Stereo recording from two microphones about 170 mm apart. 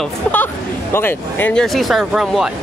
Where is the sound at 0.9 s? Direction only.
15° left (ahead or behind); by 2.5 s centre (ahead or behind).